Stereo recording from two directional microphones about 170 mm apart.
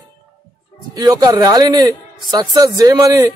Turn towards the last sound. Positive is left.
turn(degrees=-20)  # may be behind; listen again after turning